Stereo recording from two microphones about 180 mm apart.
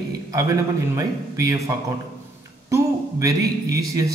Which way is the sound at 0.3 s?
20° right (ahead or behind).